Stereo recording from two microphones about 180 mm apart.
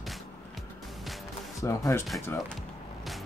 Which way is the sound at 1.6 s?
15° left (ahead or behind).